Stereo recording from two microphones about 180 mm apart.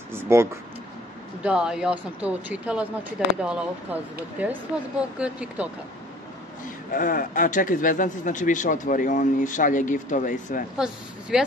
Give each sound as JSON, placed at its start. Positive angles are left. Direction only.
{"t": 0.1, "sound": "speech", "side_deg": -15}
{"t": 6.9, "sound": "speech", "side_deg": 50}
{"t": 10.8, "sound": "speech", "side_deg": -5}